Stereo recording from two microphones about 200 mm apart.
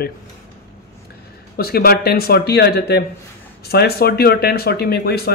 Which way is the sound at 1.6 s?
50° left (ahead or behind).